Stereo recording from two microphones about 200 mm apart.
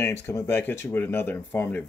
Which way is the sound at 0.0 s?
10° left (ahead or behind).